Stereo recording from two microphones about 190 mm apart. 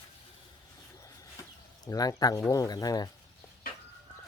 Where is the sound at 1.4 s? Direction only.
15° left (ahead or behind).